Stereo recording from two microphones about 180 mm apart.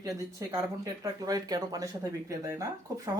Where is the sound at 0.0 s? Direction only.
20° right (ahead or behind).